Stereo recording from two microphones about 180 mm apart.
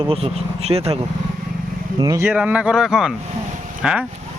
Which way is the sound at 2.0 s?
20° right (ahead or behind).